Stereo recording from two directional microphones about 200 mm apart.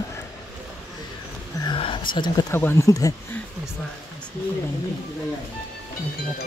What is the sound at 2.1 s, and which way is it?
Speech, 20° left (ahead or behind).